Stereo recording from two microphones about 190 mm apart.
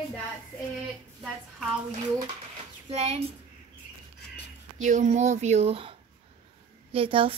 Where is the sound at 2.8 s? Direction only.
35° right (ahead or behind).